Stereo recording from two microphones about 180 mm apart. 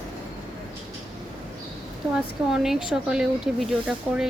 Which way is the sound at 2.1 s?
5° right (ahead or behind).